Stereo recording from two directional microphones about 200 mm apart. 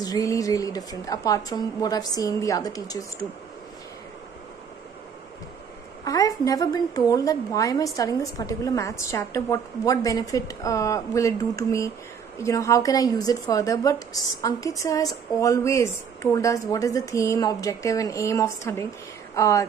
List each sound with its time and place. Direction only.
0.0 s a woman's voice: 15° left (ahead or behind)
6.0 s a woman's voice: 15° left (ahead or behind)